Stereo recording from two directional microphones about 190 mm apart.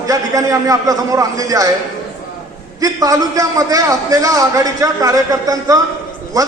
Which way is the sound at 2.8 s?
20° right (ahead or behind).